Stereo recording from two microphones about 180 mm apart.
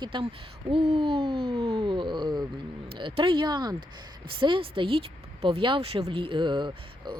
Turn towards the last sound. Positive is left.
turn(degrees=-25)  # may be behind; listen again after turning